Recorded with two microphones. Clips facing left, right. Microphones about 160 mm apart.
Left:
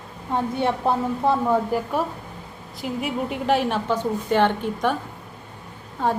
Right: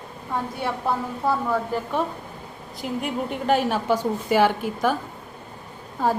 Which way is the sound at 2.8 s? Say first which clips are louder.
Left 1 dB; centre (ahead or behind).